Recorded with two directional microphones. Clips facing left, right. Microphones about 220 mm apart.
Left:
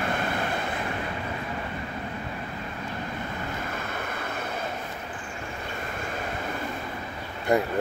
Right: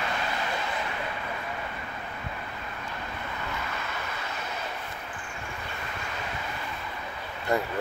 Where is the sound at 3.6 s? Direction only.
50° left (ahead or behind).